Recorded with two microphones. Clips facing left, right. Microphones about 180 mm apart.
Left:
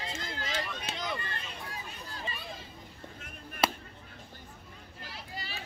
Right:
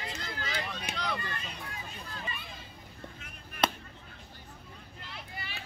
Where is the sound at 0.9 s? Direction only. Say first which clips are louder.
Even; 15° right (ahead or behind).